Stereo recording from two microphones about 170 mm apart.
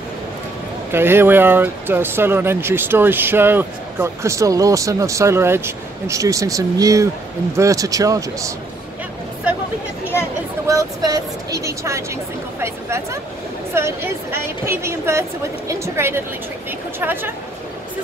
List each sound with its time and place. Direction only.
0.9 s speech: 15° right (ahead or behind)
10.7 s speech: 20° right (ahead or behind)